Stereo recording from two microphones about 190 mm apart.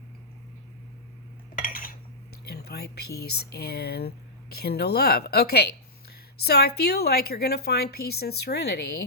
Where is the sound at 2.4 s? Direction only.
60° left (ahead or behind).